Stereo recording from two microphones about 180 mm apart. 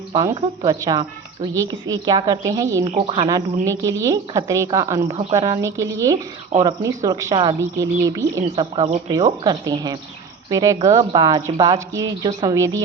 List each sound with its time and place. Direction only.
0.1 s a woman's voice: 20° right (ahead or behind)